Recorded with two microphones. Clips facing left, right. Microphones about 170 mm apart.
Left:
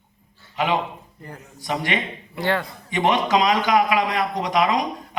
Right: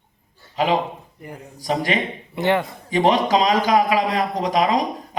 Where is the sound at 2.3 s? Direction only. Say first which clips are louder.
Right 4 dB; 20° right (ahead or behind).